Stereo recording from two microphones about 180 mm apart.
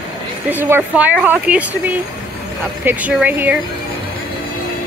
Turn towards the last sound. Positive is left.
turn(degrees=-10)  # may be behind; listen again after turning